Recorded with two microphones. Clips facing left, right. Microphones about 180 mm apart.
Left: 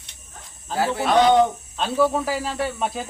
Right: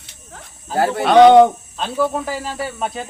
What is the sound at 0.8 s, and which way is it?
Speech, 65° right (ahead or behind).